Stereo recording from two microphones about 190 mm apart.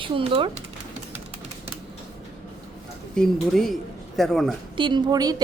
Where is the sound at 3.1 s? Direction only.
Centre (ahead or behind).